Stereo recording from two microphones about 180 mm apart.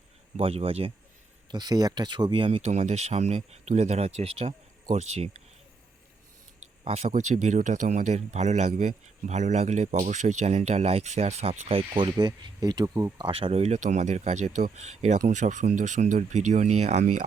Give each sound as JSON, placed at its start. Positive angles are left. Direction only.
{"t": 0.3, "sound": "speech", "side_deg": -30}
{"t": 6.8, "sound": "speech", "side_deg": -35}